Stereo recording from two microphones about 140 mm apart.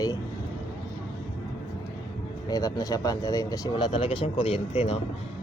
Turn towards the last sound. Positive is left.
turn(degrees=45)  # may be behind; listen again after turning